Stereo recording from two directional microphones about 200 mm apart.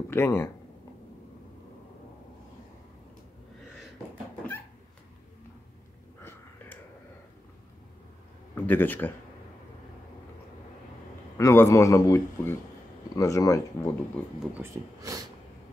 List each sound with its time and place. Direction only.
0.1 s a man's voice: 10° left (ahead or behind)
8.5 s speech: 10° left (ahead or behind)
11.3 s a man's voice: 15° left (ahead or behind)
14.6 s speech: 15° right (ahead or behind)